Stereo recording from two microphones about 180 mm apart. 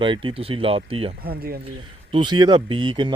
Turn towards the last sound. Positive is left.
turn(degrees=-25)  # may be behind; listen again after turning